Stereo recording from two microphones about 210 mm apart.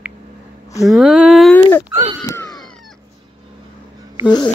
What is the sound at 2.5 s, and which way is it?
Dog, centre (ahead or behind).